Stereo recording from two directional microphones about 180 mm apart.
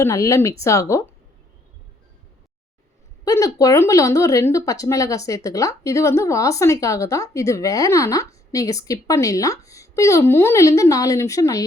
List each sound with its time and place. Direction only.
0.0 s speech: 15° left (ahead or behind)
3.2 s speech: 20° left (ahead or behind)